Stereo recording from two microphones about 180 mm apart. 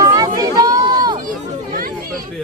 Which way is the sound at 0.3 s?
20° right (ahead or behind).